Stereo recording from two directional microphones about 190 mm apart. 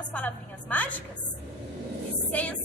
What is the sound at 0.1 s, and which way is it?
Speech, 10° left (ahead or behind).